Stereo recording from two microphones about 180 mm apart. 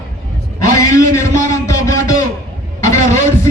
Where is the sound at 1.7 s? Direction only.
20° left (ahead or behind).